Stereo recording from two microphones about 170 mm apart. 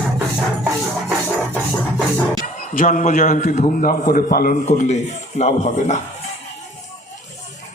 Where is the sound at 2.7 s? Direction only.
50° left (ahead or behind).